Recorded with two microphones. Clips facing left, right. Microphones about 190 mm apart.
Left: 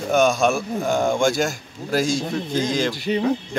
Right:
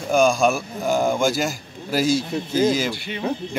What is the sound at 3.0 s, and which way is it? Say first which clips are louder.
Speech: left 9 dB; 40° left (ahead or behind).